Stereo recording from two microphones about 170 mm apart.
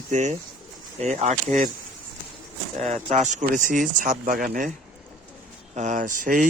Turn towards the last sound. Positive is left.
turn(degrees=-50)  # may be behind; listen again after turning